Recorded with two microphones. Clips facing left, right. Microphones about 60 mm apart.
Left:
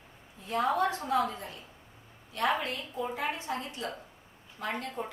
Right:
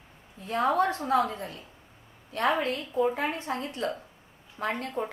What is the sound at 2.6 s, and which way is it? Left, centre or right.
A woman's voice, right.